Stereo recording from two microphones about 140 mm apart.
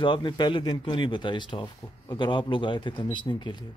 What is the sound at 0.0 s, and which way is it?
Speech, 35° left (ahead or behind).